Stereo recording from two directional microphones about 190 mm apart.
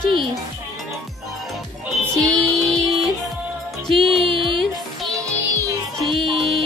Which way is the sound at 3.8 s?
Centre (ahead or behind).